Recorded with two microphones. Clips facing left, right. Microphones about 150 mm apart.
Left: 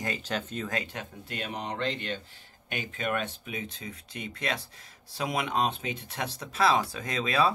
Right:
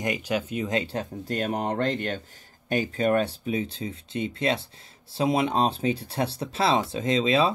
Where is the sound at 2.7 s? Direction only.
35° right (ahead or behind).